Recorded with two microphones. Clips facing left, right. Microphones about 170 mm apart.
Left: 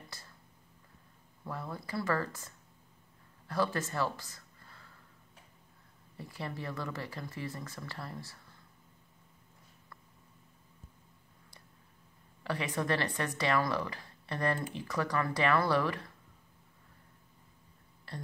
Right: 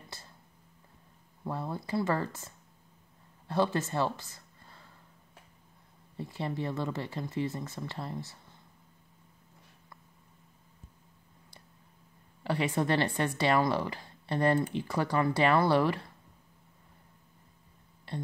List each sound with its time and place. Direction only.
1.4 s speech: 25° right (ahead or behind)
6.1 s speech: 25° right (ahead or behind)
12.4 s speech: 30° right (ahead or behind)